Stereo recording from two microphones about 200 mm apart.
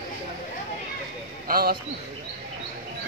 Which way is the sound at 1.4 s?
50° right (ahead or behind).